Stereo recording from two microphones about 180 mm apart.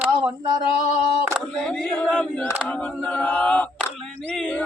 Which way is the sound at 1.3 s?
Centre (ahead or behind).